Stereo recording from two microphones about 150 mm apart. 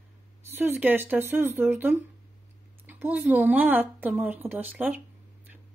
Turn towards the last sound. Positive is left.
turn(degrees=-10)  # may be behind; listen again after turning